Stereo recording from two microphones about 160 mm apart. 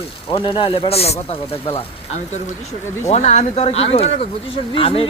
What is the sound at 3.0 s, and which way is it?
Speech, 45° left (ahead or behind).